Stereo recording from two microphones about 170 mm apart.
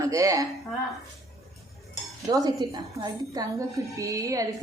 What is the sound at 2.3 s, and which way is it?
A woman's voice, 20° right (ahead or behind).